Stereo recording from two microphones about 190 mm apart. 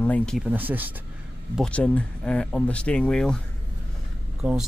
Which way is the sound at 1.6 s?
5° left (ahead or behind).